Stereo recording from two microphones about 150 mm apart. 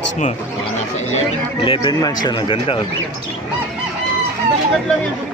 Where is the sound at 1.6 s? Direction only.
35° left (ahead or behind).